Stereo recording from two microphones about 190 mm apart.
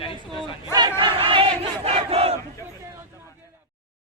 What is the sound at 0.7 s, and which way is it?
Battle cry, 20° right (ahead or behind).